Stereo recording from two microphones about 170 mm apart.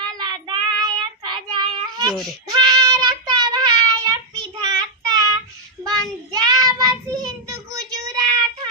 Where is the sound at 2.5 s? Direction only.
25° right (ahead or behind).